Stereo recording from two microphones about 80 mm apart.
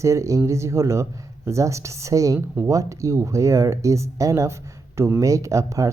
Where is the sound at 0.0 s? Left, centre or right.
Right.